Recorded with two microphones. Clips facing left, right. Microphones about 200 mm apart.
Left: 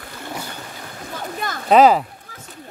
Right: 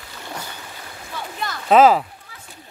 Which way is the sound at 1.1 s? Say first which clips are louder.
Left 2 dB; 50° left (ahead or behind).